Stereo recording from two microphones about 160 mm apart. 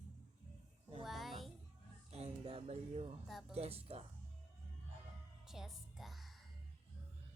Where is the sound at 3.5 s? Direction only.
40° right (ahead or behind).